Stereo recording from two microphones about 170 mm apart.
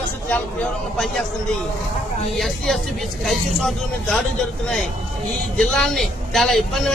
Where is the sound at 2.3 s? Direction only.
Centre (ahead or behind).